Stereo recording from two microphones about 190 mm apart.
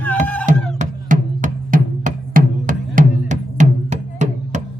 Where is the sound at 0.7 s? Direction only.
40° right (ahead or behind).